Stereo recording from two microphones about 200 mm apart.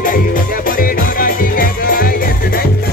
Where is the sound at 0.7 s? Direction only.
45° left (ahead or behind).